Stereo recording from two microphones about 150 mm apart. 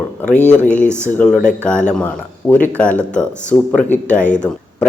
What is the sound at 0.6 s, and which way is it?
Speech, 10° left (ahead or behind).